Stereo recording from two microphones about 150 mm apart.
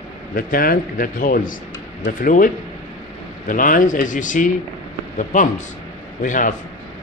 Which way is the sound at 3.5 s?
65° left (ahead or behind).